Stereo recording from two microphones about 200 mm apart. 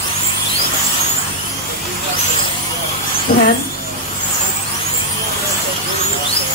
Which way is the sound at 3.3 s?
45° left (ahead or behind).